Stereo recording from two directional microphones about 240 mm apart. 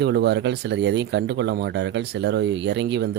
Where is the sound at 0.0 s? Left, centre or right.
Right.